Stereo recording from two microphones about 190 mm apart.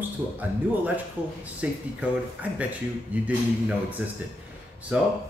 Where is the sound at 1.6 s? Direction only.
5° right (ahead or behind).